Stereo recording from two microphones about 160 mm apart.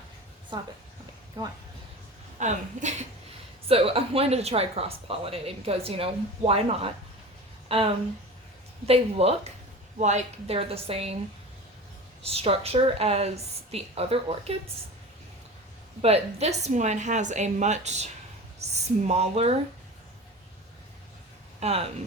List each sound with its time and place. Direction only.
0.5 s a woman's voice: 25° right (ahead or behind)
2.4 s a woman's voice: 45° right (ahead or behind)
3.7 s speech: 35° right (ahead or behind)
8.9 s speech: 40° right (ahead or behind)
12.2 s speech: 40° right (ahead or behind)
16.0 s a woman's voice: 40° right (ahead or behind)
21.6 s speech: 40° right (ahead or behind)